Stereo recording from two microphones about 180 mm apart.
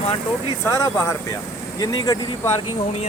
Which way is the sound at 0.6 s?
15° left (ahead or behind).